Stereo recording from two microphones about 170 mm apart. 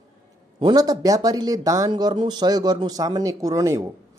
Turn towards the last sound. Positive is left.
turn(degrees=-20)  # may be behind; listen again after turning